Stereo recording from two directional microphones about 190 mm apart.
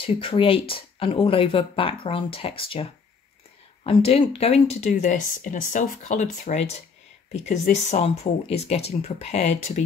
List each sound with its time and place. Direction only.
0.0 s speech: 30° left (ahead or behind)